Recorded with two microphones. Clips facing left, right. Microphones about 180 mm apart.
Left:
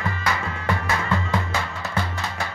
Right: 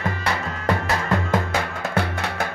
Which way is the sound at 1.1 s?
55° right (ahead or behind).